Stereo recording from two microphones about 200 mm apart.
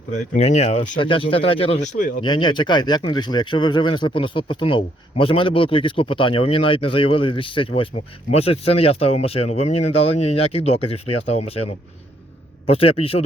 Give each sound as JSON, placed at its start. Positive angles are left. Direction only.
{"t": 0.1, "sound": "speech", "side_deg": 35}